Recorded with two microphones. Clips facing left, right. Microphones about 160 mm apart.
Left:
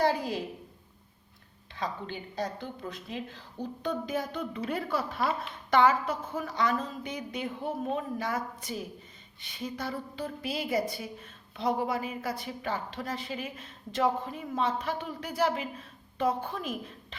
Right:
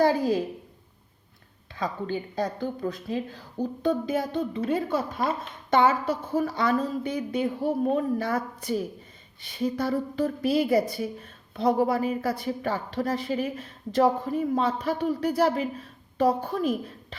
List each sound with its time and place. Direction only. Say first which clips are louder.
1.8 s a woman's voice: right 6 dB; 45° right (ahead or behind); by 4.6 s 25° right (ahead or behind)
4.9 s speech: right 3 dB; 45° right (ahead or behind)
5.7 s a woman's voice: right 2 dB; 25° right (ahead or behind)